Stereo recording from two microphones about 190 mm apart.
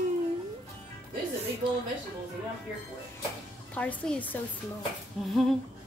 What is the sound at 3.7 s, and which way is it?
A woman's voice, 10° left (ahead or behind).